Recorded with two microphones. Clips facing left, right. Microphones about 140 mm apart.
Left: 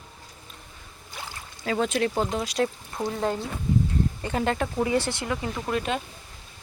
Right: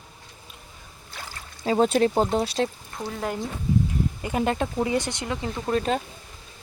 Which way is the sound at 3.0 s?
10° left (ahead or behind).